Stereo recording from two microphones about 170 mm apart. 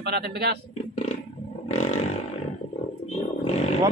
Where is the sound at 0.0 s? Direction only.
75° right (ahead or behind).